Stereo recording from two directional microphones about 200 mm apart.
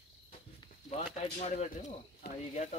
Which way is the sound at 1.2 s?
35° left (ahead or behind).